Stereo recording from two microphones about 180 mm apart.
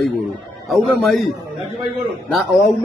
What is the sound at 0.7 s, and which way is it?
A man's voice, centre (ahead or behind).